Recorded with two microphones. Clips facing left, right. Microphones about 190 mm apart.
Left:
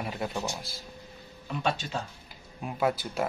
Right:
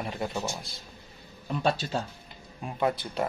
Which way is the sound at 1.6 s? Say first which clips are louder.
Right 3 dB; 35° right (ahead or behind).